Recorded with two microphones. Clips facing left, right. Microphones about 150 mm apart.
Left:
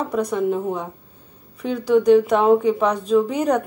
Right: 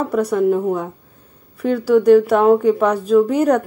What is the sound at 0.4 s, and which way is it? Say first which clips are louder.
Speech: right 5 dB; 5° right (ahead or behind).